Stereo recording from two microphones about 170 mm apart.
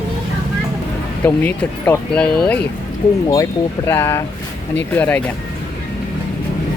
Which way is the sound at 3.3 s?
20° left (ahead or behind).